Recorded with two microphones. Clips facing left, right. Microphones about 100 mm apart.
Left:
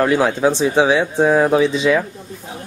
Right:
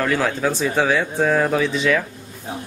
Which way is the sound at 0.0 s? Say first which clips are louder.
Left 5 dB; 20° left (ahead or behind).